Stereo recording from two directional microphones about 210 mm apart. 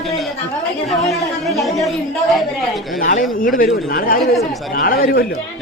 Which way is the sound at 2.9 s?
40° left (ahead or behind).